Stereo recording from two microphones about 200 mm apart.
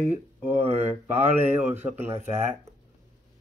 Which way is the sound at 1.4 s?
10° right (ahead or behind).